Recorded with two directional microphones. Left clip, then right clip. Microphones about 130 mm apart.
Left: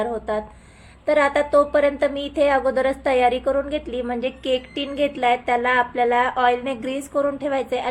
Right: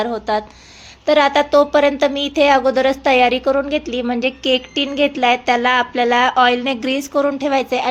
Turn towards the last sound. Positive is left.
turn(degrees=-30)  # may be behind; listen again after turning